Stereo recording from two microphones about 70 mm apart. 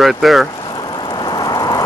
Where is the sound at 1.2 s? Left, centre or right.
Left.